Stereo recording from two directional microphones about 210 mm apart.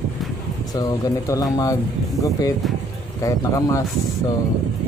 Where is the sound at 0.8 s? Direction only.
15° left (ahead or behind).